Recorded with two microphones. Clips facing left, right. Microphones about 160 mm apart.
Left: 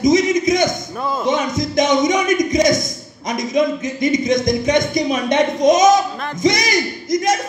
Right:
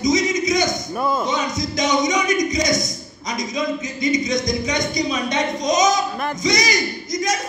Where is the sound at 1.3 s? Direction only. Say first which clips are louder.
Left 5 dB; 55° left (ahead or behind).